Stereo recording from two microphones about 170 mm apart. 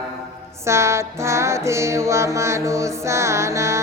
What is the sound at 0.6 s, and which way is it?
Music, 15° right (ahead or behind).